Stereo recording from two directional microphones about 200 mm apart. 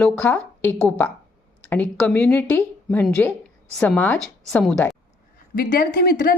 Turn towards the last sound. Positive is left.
turn(degrees=45)  # may be behind; listen again after turning